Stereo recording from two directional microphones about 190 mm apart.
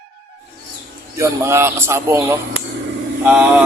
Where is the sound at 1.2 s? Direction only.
15° right (ahead or behind).